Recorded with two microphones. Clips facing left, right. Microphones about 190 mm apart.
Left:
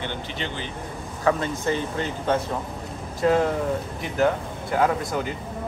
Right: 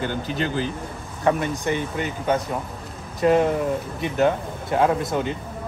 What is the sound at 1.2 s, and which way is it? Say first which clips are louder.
Speech: right 1 dB; 15° right (ahead or behind).